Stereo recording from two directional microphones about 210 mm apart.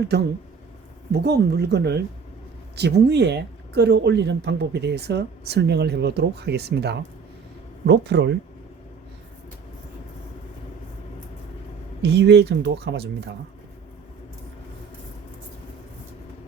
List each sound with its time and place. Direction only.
0.1 s speech: 50° right (ahead or behind)
12.0 s speech: 55° right (ahead or behind)